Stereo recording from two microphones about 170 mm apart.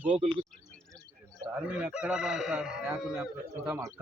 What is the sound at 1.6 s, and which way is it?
Chicken, 5° right (ahead or behind).